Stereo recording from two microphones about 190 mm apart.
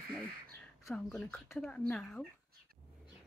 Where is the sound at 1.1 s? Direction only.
5° left (ahead or behind).